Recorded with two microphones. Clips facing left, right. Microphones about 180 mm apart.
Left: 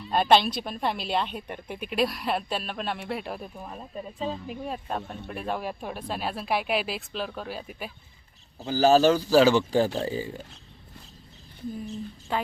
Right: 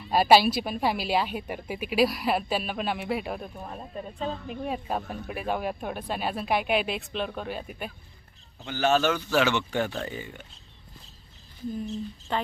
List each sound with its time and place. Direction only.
0.1 s a woman's voice: 5° right (ahead or behind)
8.5 s a man's voice: 35° left (ahead or behind)
12.3 s speech: 10° left (ahead or behind)